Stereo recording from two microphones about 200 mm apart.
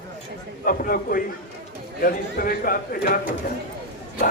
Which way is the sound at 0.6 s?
45° left (ahead or behind).